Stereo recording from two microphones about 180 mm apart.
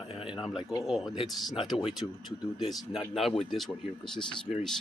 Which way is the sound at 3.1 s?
Centre (ahead or behind).